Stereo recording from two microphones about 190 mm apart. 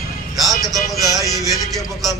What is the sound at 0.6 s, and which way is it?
Speech, centre (ahead or behind).